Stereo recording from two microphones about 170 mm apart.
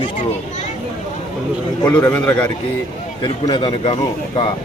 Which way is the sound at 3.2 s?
30° left (ahead or behind).